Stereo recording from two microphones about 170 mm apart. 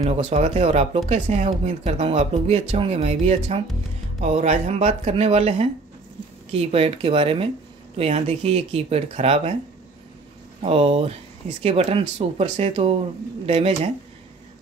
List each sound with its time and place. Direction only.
0.0 s speech: 40° right (ahead or behind)
10.6 s speech: 35° right (ahead or behind)